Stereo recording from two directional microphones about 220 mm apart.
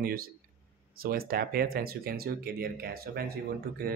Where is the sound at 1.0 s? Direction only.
40° right (ahead or behind).